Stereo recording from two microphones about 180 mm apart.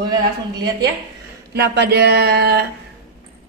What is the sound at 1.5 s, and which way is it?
A woman's voice, 65° right (ahead or behind).